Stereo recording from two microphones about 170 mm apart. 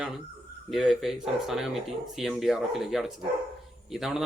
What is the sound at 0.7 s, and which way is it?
Speech, centre (ahead or behind).